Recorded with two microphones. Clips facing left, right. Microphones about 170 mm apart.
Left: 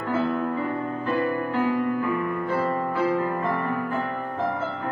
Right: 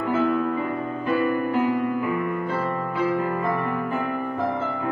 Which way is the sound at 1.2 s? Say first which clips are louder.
Right 3 dB; 15° right (ahead or behind).